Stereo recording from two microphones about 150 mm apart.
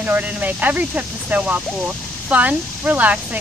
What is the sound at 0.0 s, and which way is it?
Speech, 10° right (ahead or behind).